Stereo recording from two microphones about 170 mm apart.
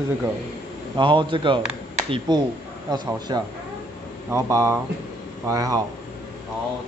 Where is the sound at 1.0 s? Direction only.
30° right (ahead or behind).